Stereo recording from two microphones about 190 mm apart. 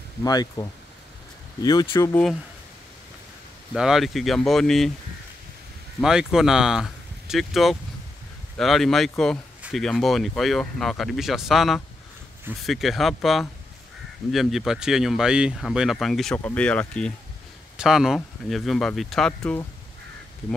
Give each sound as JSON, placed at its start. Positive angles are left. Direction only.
{"t": 0.2, "sound": "speech", "side_deg": 20}
{"t": 3.7, "sound": "speech", "side_deg": -5}
{"t": 5.9, "sound": "speech", "side_deg": -5}